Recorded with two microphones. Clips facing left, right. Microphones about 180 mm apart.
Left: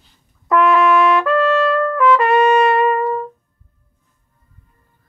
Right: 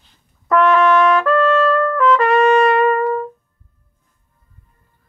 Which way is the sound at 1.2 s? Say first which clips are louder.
Right 1 dB; 15° left (ahead or behind).